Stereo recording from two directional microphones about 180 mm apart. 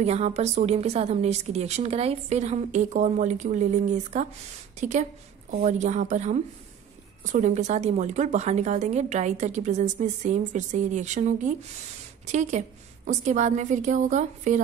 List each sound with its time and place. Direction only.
0.0 s speech: 35° right (ahead or behind)